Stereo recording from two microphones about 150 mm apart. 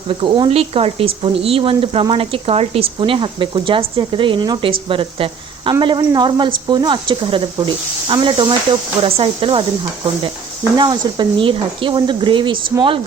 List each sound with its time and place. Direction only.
0.1 s speech: 35° right (ahead or behind)
10.8 s speech: 30° right (ahead or behind)